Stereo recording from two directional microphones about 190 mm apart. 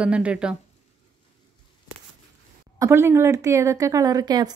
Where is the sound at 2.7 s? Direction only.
15° right (ahead or behind).